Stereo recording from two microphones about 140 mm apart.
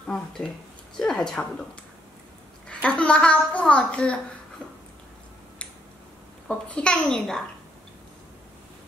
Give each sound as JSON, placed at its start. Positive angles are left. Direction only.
{"t": 0.0, "sound": "a child's voice", "side_deg": 5}
{"t": 2.7, "sound": "a child's voice", "side_deg": 10}
{"t": 6.4, "sound": "a child's voice", "side_deg": 5}